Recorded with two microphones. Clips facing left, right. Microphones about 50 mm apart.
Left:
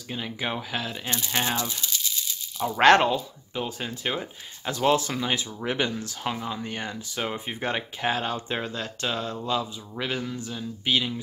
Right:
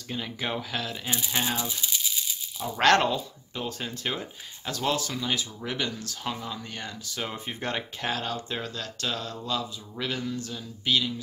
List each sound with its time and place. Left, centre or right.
0.1 s speech: centre
1.6 s a sound: centre
2.8 s speech: centre